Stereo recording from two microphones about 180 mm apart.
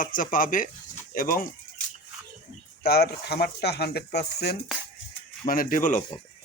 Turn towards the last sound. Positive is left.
turn(degrees=50)  # may be behind; listen again after turning